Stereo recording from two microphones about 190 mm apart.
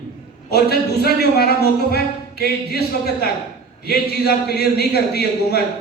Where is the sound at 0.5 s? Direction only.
55° left (ahead or behind).